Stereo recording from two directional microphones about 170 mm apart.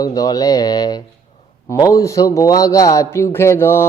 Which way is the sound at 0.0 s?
20° left (ahead or behind).